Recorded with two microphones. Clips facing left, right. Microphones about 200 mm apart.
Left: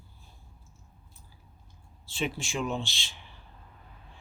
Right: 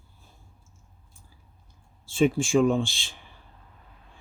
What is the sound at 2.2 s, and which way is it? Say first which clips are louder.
Speech: right 12 dB; 50° right (ahead or behind).